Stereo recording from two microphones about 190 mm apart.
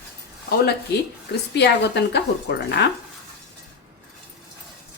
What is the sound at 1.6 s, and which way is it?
Speech, 60° left (ahead or behind).